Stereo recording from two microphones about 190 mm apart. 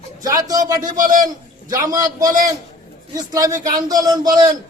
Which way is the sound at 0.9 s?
45° right (ahead or behind).